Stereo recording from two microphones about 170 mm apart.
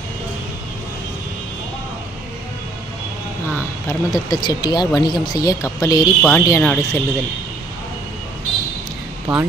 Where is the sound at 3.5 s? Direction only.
10° left (ahead or behind).